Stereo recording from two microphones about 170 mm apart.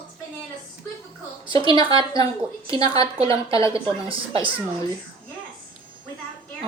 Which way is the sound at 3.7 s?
30° right (ahead or behind).